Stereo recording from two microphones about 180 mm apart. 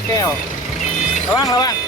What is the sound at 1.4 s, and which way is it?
Speech, 20° left (ahead or behind).